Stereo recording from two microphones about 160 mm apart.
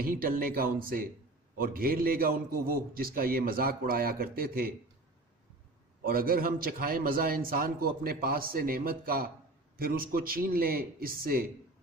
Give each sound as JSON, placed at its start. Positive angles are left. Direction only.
{"t": 0.0, "sound": "a man's voice", "side_deg": -65}
{"t": 6.1, "sound": "a man's voice", "side_deg": -65}